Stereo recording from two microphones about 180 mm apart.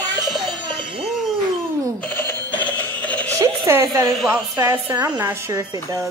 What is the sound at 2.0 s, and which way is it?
Alarm clock, 10° left (ahead or behind).